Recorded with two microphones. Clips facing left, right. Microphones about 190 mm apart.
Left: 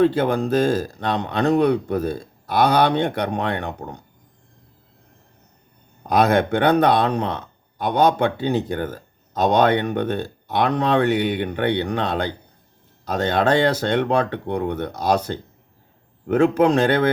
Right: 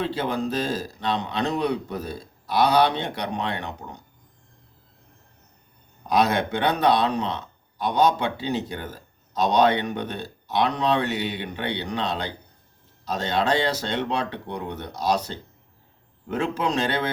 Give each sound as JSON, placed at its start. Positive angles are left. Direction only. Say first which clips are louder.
{"t": 0.0, "sound": "speech", "louder": "left 8 dB", "side_deg": 50}
{"t": 6.0, "sound": "speech", "louder": "left 4 dB", "side_deg": 50}